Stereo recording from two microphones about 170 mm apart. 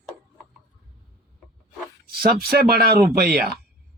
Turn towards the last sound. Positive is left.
turn(degrees=-65)  # may be behind; listen again after turning